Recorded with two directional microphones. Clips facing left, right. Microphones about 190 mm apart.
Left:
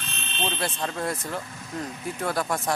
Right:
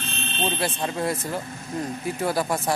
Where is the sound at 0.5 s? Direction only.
5° right (ahead or behind).